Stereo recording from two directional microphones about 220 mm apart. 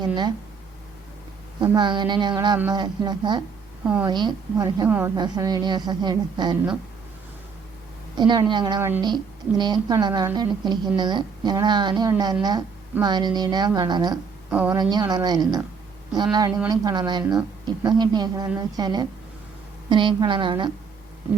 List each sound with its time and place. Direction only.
0.0 s a woman's voice: 20° right (ahead or behind)
1.6 s a woman's voice: 20° right (ahead or behind)
4.9 s a woman's voice: 5° right (ahead or behind)
5.1 s a woman's voice: 20° right (ahead or behind)
8.1 s a woman's voice: 20° right (ahead or behind)
14.5 s a woman's voice: 5° right (ahead or behind)
14.8 s a woman's voice: 20° right (ahead or behind)
16.6 s a woman's voice: 15° right (ahead or behind)